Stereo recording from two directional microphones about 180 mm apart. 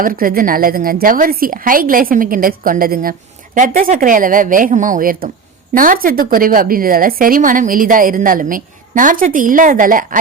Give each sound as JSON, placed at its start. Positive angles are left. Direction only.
{"t": 0.0, "sound": "a woman's voice", "side_deg": -50}